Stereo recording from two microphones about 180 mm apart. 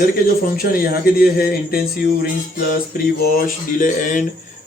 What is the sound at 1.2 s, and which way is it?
Speech, 55° left (ahead or behind).